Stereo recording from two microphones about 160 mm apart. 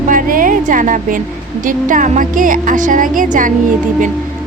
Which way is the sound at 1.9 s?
55° right (ahead or behind).